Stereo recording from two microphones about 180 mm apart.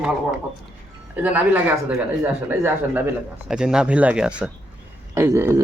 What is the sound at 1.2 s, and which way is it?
Speech, 10° right (ahead or behind).